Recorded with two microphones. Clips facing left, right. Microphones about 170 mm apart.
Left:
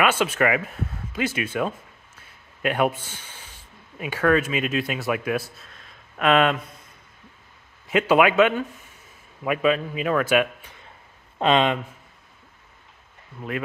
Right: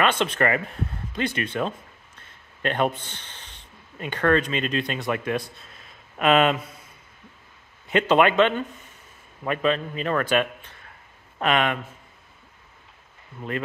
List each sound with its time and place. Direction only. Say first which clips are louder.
0.0 s speech: left 1 dB; 5° left (ahead or behind)
7.8 s a man's voice: left 1 dB; 5° left (ahead or behind)
11.3 s speech: left 3 dB; 25° left (ahead or behind)